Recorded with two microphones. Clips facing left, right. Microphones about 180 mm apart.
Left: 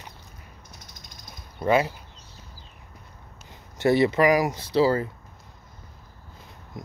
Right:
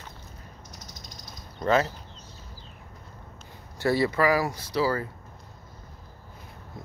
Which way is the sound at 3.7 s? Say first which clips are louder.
Left 4 dB; 20° left (ahead or behind).